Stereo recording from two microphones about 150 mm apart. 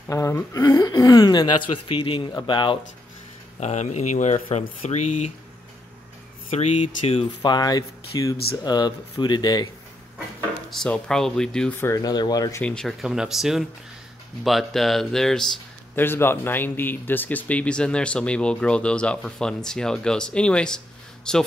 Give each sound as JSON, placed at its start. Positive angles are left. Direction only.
{"t": 0.1, "sound": "speech", "side_deg": 20}
{"t": 3.5, "sound": "speech", "side_deg": 50}
{"t": 6.5, "sound": "speech", "side_deg": 40}
{"t": 7.4, "sound": "speech", "side_deg": 25}
{"t": 10.7, "sound": "speech", "side_deg": 5}
{"t": 11.8, "sound": "speech", "side_deg": 20}
{"t": 12.6, "sound": "speech", "side_deg": 5}
{"t": 16.0, "sound": "speech", "side_deg": 15}